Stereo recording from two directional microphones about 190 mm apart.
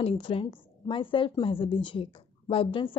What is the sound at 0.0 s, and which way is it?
A woman's voice, 25° left (ahead or behind).